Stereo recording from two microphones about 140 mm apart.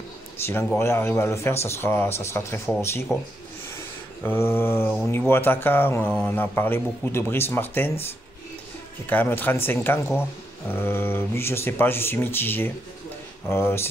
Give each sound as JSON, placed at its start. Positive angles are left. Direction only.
{"t": 0.7, "sound": "speech", "side_deg": 15}
{"t": 3.7, "sound": "a sound", "side_deg": 15}
{"t": 5.0, "sound": "speech", "side_deg": 15}
{"t": 9.0, "sound": "speech", "side_deg": 15}